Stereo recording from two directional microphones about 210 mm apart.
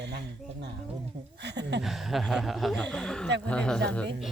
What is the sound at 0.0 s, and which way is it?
Speech, 55° right (ahead or behind).